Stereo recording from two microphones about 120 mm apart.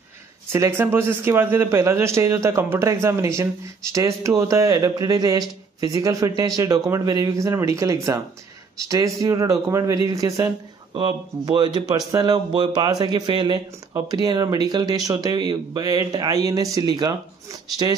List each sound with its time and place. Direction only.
0.5 s a man's voice: 20° right (ahead or behind)
10.9 s speech: 45° right (ahead or behind)